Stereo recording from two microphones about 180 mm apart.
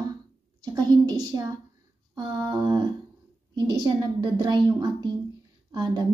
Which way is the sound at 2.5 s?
25° right (ahead or behind).